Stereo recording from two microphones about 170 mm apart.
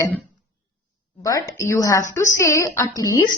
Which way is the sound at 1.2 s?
20° left (ahead or behind).